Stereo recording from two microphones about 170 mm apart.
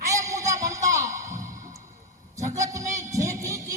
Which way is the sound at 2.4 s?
20° right (ahead or behind).